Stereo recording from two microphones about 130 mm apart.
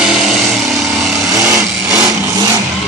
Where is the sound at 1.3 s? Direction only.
25° right (ahead or behind).